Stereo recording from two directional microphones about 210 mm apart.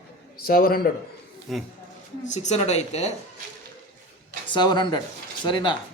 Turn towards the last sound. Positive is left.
turn(degrees=20)  # may be behind; listen again after turning